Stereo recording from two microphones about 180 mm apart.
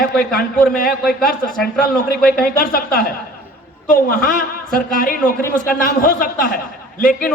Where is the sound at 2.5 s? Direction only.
55° left (ahead or behind).